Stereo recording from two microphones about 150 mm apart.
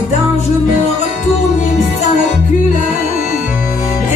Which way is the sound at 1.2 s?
50° left (ahead or behind).